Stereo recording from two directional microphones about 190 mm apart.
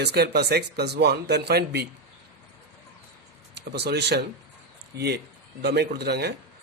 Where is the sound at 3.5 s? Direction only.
60° right (ahead or behind).